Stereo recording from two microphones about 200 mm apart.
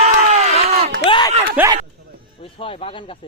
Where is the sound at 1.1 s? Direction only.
20° left (ahead or behind).